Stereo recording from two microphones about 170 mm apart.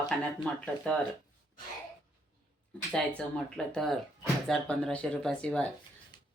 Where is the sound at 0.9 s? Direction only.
5° left (ahead or behind).